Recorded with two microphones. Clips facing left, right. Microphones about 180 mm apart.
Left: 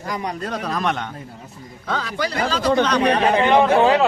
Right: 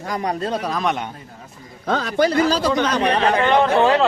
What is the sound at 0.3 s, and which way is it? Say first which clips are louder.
Speech: right 7 dB; 25° right (ahead or behind).